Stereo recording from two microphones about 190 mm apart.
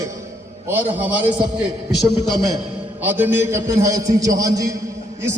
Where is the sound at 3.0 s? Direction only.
10° right (ahead or behind).